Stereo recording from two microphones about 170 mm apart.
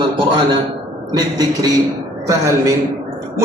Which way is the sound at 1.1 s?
20° right (ahead or behind).